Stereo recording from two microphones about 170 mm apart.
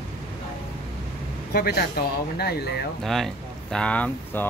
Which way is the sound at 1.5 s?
65° left (ahead or behind).